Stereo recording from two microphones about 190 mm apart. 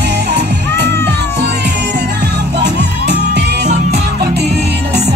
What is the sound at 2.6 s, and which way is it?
Music, 60° right (ahead or behind).